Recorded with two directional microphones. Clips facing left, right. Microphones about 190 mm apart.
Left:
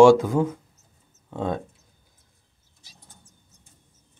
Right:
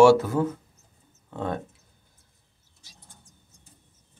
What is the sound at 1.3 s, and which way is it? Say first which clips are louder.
Speech: left 3 dB; 15° left (ahead or behind).